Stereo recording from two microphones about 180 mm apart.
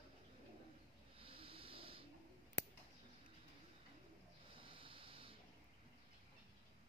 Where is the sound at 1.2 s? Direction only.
30° right (ahead or behind).